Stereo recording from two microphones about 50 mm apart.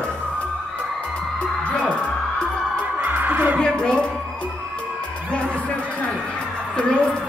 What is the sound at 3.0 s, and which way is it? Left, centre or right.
Music, right.